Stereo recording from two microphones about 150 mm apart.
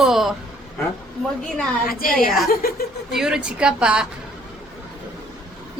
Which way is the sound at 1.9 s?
70° left (ahead or behind).